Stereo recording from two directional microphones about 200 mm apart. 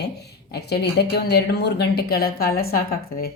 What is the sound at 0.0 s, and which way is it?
Speech, 55° left (ahead or behind).